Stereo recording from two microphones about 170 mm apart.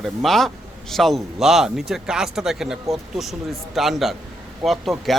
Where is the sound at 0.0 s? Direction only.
Centre (ahead or behind).